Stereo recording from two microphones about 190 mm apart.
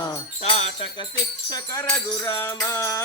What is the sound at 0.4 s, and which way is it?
Music, 35° left (ahead or behind).